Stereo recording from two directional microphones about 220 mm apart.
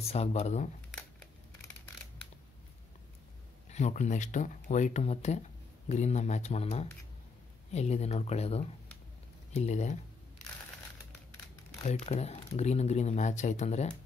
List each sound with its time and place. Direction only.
0.0 s speech: 30° left (ahead or behind)
3.7 s speech: 30° left (ahead or behind)
11.8 s speech: 30° left (ahead or behind)